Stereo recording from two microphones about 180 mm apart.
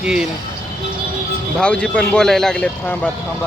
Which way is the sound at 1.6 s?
5° left (ahead or behind).